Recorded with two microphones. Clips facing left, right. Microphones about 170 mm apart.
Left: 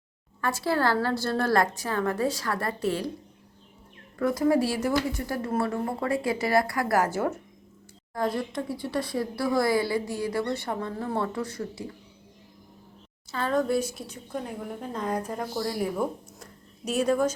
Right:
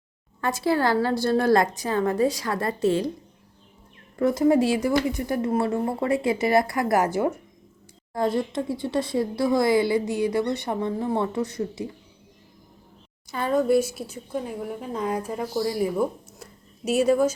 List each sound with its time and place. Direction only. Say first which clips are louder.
0.4 s a woman's voice: right 3 dB; 15° right (ahead or behind)
4.2 s speech: right 4 dB; 25° right (ahead or behind)
13.3 s a woman's voice: right 4 dB; 10° right (ahead or behind)